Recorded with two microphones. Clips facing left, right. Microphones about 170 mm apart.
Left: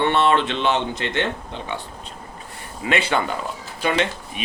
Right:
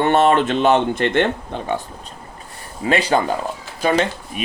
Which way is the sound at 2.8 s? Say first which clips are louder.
Right 4 dB; 35° right (ahead or behind).